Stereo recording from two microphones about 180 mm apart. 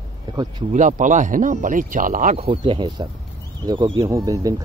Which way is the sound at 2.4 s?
30° right (ahead or behind).